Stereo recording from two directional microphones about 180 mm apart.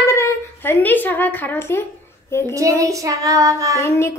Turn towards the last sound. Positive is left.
turn(degrees=15)  # may be behind; listen again after turning